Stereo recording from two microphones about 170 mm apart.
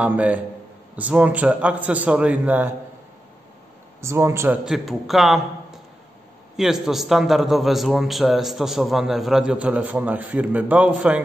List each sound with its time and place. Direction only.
0.0 s a man's voice: 10° right (ahead or behind)
4.0 s a man's voice: 15° right (ahead or behind)
4.6 s a man's voice: centre (ahead or behind)